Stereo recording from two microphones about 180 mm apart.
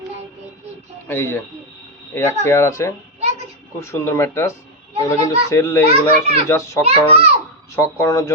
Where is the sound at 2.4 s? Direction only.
15° left (ahead or behind).